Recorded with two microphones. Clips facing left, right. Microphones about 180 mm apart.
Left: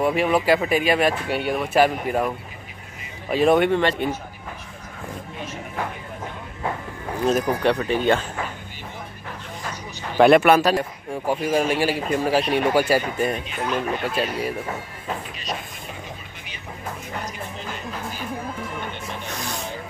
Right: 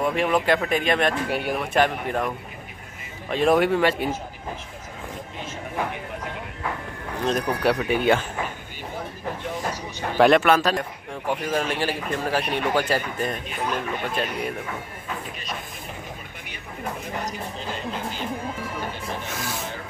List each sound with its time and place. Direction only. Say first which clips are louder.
0.0 s speech: left 2 dB; 5° left (ahead or behind)
7.2 s speech: left 3 dB; 5° left (ahead or behind)
7.6 s speech: right 2 dB; 5° right (ahead or behind)
10.1 s speech: left 3 dB; 10° left (ahead or behind)
17.2 s speech: right 1 dB; 40° right (ahead or behind)
19.2 s vehicle: even; 5° right (ahead or behind)